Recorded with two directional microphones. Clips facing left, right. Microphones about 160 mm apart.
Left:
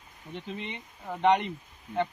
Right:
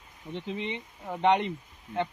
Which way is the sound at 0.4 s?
25° right (ahead or behind).